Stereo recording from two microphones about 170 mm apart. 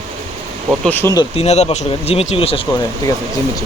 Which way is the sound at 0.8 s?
10° left (ahead or behind).